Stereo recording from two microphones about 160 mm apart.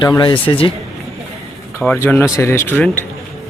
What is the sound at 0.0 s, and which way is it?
Speech, 25° left (ahead or behind).